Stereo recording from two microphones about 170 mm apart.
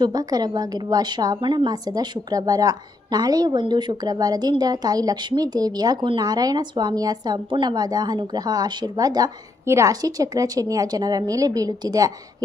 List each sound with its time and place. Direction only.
0.0 s a woman's voice: 25° right (ahead or behind)